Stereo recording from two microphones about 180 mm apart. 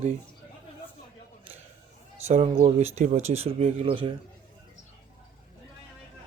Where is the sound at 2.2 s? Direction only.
40° right (ahead or behind).